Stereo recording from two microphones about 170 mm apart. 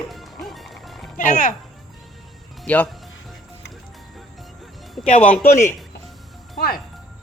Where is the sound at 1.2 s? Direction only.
50° left (ahead or behind).